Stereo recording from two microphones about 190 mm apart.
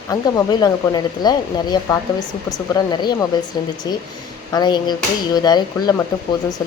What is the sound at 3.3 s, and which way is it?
Speech, 20° left (ahead or behind).